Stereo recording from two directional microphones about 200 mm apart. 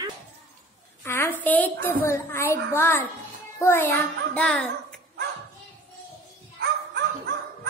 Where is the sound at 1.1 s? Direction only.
10° left (ahead or behind).